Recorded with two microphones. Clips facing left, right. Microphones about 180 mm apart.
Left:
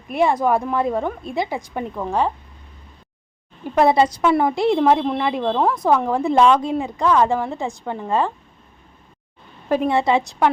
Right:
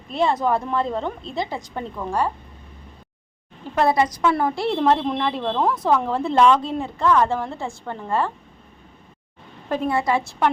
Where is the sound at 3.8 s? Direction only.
25° left (ahead or behind).